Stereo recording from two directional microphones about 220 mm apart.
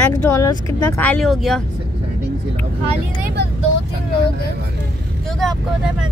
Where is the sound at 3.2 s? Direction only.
50° right (ahead or behind).